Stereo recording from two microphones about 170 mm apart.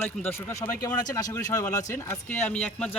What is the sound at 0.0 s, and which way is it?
Speech, 10° left (ahead or behind).